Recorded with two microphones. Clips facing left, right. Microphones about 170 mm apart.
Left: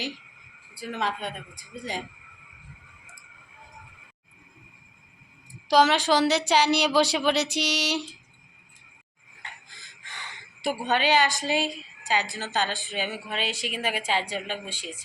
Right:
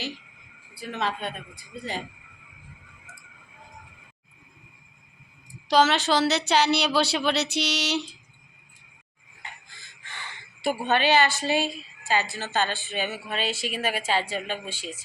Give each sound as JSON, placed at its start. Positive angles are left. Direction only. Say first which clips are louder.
{"t": 0.7, "sound": "a woman's voice", "louder": "even", "side_deg": 10}
{"t": 5.6, "sound": "a woman's voice", "louder": "left 1 dB", "side_deg": 10}
{"t": 9.7, "sound": "gasp", "louder": "right 1 dB", "side_deg": 15}
{"t": 10.8, "sound": "a woman's voice", "louder": "right 1 dB", "side_deg": 15}